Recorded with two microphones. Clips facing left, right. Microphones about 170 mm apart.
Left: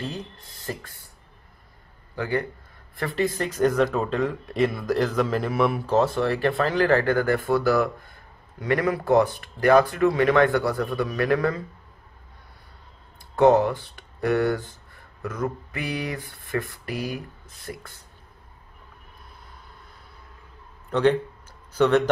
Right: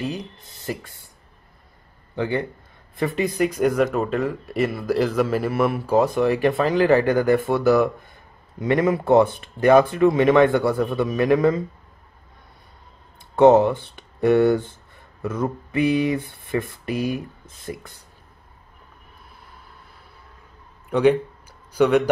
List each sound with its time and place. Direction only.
0.0 s speech: 15° right (ahead or behind)
2.1 s a man's voice: 20° right (ahead or behind)
13.4 s speech: 25° right (ahead or behind)
20.9 s speech: 10° right (ahead or behind)